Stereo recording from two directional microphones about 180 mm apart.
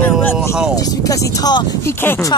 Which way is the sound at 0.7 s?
20° left (ahead or behind).